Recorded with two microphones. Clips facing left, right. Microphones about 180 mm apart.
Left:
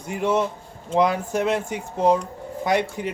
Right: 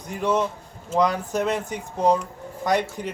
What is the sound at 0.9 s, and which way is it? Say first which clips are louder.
A man's voice: left 1 dB; 5° left (ahead or behind).